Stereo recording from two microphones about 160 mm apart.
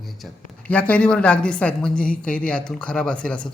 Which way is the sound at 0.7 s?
10° left (ahead or behind).